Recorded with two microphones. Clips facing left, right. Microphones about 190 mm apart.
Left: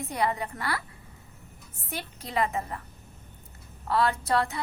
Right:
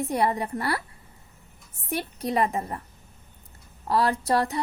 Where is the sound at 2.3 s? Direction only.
35° right (ahead or behind).